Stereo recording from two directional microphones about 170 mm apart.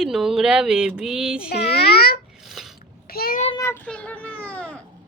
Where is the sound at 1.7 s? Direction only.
70° left (ahead or behind).